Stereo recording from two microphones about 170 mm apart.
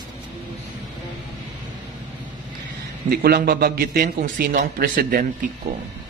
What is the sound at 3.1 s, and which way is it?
A man's voice, 60° right (ahead or behind).